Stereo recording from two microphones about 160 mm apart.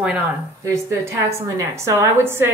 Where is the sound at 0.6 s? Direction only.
20° right (ahead or behind).